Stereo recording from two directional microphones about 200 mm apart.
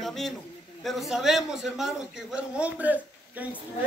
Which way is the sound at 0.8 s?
Centre (ahead or behind).